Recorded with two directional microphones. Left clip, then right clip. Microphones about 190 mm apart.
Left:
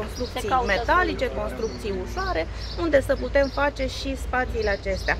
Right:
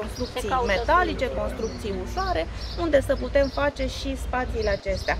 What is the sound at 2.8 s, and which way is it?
Speech, centre (ahead or behind).